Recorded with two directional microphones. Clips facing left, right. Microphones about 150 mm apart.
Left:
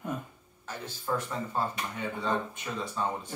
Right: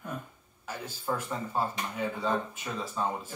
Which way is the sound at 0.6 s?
10° right (ahead or behind).